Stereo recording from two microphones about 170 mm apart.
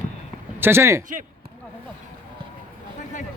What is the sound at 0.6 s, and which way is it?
Speech, 15° right (ahead or behind).